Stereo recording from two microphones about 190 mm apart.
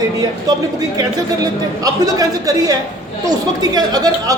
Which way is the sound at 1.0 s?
20° right (ahead or behind).